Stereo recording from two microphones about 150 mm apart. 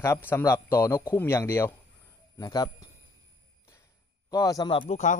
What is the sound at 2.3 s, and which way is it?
Speech, 25° left (ahead or behind).